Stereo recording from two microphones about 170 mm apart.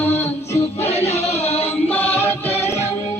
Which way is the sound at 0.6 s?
35° left (ahead or behind).